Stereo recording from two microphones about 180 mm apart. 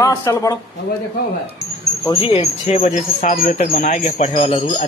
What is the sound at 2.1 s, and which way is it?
Speech, 30° left (ahead or behind).